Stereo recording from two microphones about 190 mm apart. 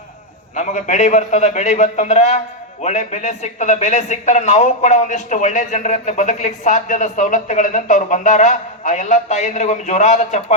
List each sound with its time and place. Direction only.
0.5 s speech: 40° left (ahead or behind)